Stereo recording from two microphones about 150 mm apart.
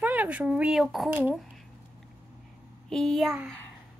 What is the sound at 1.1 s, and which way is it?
Speech, 15° right (ahead or behind).